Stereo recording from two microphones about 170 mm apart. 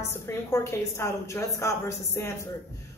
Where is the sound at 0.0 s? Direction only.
15° left (ahead or behind).